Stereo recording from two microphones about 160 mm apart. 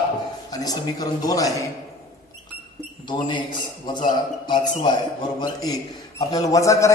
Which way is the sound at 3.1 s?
30° left (ahead or behind).